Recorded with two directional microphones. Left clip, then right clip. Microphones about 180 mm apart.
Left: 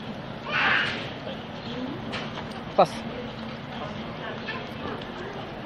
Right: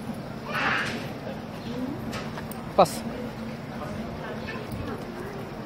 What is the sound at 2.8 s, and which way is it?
Speech, 10° right (ahead or behind).